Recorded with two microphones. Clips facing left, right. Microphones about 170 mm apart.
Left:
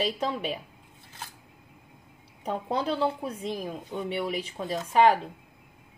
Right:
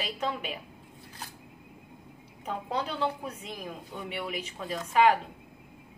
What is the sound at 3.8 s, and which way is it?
Speech, 20° left (ahead or behind).